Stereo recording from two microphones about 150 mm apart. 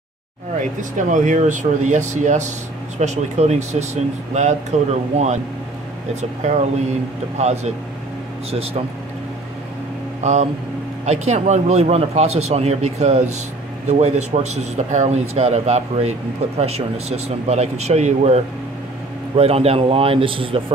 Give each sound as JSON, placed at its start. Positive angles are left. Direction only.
{"t": 0.6, "sound": "speech", "side_deg": -55}
{"t": 6.4, "sound": "speech", "side_deg": -50}
{"t": 10.2, "sound": "a man's voice", "side_deg": -50}